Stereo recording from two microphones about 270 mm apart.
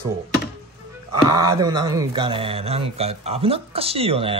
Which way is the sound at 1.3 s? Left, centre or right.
Centre.